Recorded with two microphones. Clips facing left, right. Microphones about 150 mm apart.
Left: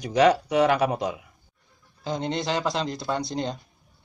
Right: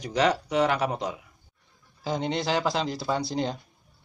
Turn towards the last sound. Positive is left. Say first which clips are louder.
# even
turn(degrees=-5)  # may be behind; listen again after turning